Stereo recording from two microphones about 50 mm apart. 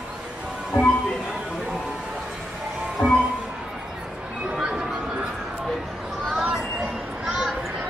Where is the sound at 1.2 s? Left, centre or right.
Centre.